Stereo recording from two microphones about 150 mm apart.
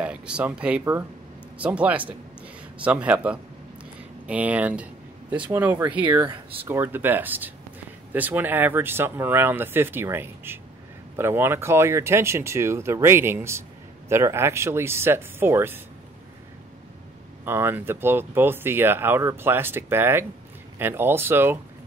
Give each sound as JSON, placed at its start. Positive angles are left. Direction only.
{"t": 0.0, "sound": "a man's voice", "side_deg": -10}
{"t": 17.5, "sound": "speech", "side_deg": -15}